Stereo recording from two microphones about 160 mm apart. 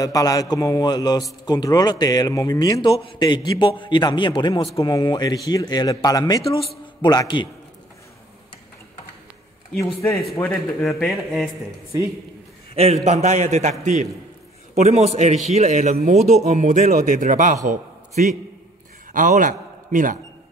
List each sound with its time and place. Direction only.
0.0 s a man's voice: 20° left (ahead or behind)
10.9 s a sound: centre (ahead or behind)
12.7 s a man's voice: 40° right (ahead or behind)